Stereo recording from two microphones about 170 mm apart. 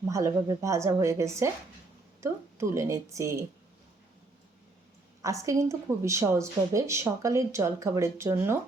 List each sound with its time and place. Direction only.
0.1 s a woman's voice: 20° right (ahead or behind)
5.2 s a woman's voice: 20° right (ahead or behind)